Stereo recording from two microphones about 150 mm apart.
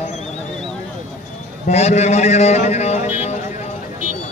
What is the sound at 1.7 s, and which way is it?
A man's voice, 45° left (ahead or behind).